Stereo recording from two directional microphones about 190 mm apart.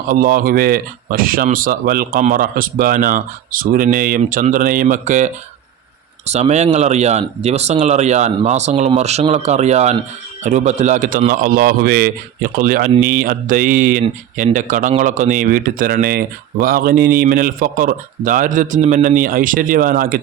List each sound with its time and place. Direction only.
0.1 s a man's voice: 45° right (ahead or behind)